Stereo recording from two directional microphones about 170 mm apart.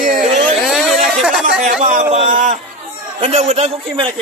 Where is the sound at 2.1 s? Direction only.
45° right (ahead or behind).